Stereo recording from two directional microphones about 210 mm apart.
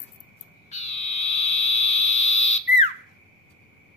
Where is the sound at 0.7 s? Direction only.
30° left (ahead or behind).